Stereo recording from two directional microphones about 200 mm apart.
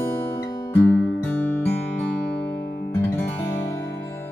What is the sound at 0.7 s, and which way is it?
Music, 10° left (ahead or behind).